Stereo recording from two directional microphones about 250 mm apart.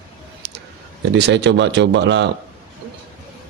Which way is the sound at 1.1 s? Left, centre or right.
Right.